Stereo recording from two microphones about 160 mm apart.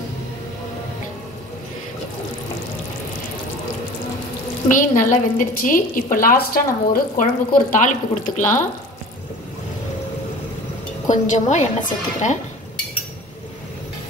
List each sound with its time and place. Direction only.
4.6 s a woman's voice: 55° left (ahead or behind)
7.7 s a woman's voice: 50° left (ahead or behind)
11.1 s a woman's voice: 50° left (ahead or behind)